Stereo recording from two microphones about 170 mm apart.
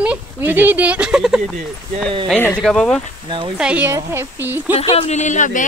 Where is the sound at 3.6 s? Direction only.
10° right (ahead or behind).